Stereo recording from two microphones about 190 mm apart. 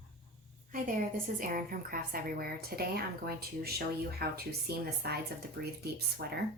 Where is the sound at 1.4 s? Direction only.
45° right (ahead or behind).